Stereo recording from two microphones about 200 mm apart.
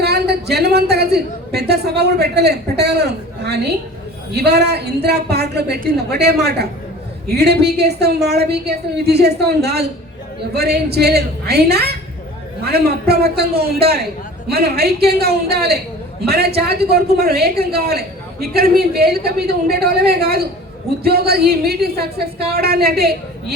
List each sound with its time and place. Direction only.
0.0 s a woman's voice: 55° right (ahead or behind)